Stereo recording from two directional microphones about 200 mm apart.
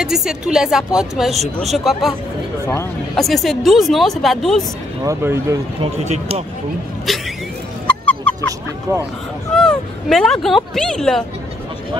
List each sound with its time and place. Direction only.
0.0 s speech: centre (ahead or behind)
3.2 s speech: centre (ahead or behind)
5.0 s speech: 15° right (ahead or behind)
5.8 s speech: 30° right (ahead or behind)
7.1 s speech: centre (ahead or behind)
8.0 s a sound: 5° left (ahead or behind)
9.5 s speech: 5° left (ahead or behind)